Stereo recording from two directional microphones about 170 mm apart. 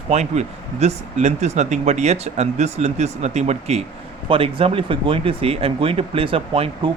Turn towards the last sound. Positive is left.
turn(degrees=-35)  # may be behind; listen again after turning